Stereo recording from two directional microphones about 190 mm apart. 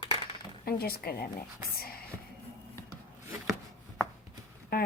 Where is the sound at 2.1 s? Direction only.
15° right (ahead or behind).